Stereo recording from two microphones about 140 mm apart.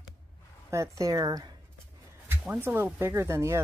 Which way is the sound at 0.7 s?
20° right (ahead or behind).